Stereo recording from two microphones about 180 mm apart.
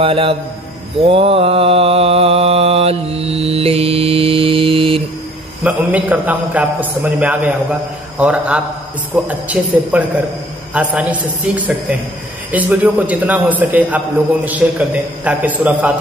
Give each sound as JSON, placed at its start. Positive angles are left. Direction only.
{"t": 0.0, "sound": "a man's voice", "side_deg": -30}
{"t": 0.9, "sound": "mantra", "side_deg": -30}
{"t": 5.6, "sound": "a man's voice", "side_deg": -10}